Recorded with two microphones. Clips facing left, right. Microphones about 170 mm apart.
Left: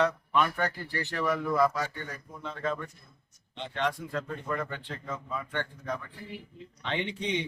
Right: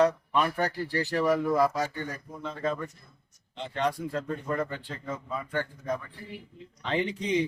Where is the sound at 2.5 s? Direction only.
35° right (ahead or behind).